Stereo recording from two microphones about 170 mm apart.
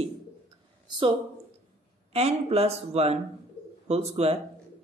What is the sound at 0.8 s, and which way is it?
Speech, 25° right (ahead or behind).